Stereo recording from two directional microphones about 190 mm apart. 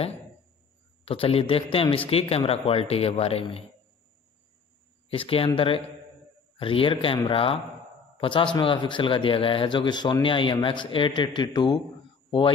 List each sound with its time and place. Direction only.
1.0 s a man's voice: 30° left (ahead or behind)
5.1 s speech: 30° left (ahead or behind)
6.6 s a man's voice: 30° left (ahead or behind)